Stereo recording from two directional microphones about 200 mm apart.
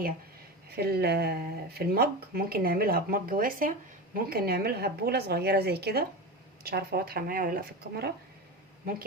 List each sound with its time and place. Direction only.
0.8 s speech: 55° right (ahead or behind)